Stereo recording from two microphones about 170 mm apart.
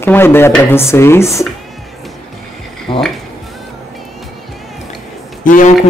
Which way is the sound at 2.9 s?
30° left (ahead or behind).